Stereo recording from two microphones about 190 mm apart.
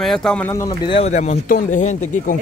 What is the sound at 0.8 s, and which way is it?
Speech, 30° left (ahead or behind).